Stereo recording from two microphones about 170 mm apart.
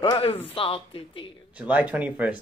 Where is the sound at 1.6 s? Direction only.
10° right (ahead or behind).